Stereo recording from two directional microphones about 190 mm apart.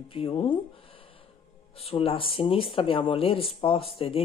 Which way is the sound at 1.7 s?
30° left (ahead or behind).